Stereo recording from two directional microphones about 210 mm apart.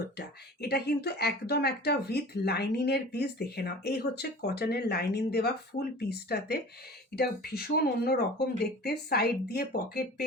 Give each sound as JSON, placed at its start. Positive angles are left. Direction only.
{"t": 0.2, "sound": "speech", "side_deg": 50}